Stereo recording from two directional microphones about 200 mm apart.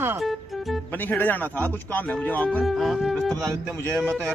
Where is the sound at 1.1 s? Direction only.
10° left (ahead or behind).